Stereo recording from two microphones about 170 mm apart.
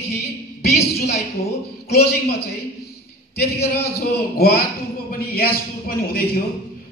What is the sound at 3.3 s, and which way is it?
A man's voice, 70° left (ahead or behind).